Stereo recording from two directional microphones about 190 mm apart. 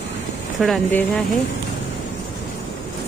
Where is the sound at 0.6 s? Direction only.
5° left (ahead or behind).